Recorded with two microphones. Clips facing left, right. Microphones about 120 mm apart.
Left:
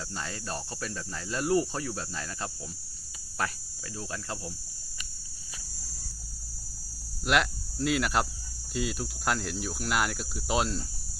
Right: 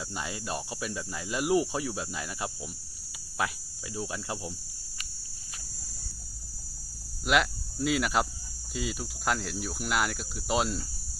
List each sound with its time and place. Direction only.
0.1 s speech: 10° right (ahead or behind)
3.9 s speech: 15° right (ahead or behind)
7.3 s speech: centre (ahead or behind)